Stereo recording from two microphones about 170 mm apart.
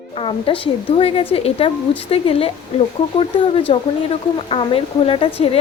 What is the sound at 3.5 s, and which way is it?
Speech, 35° left (ahead or behind).